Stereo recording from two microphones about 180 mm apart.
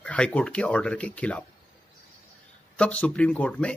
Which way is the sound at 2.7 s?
5° left (ahead or behind).